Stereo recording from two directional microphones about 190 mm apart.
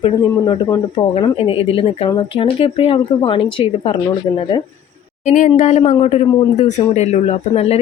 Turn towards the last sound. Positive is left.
turn(degrees=35)  # may be behind; listen again after turning